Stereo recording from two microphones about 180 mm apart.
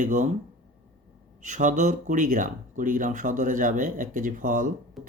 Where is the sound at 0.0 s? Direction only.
45° right (ahead or behind).